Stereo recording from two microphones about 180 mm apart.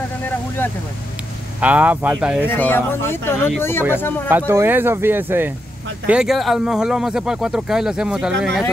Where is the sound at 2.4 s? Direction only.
10° left (ahead or behind).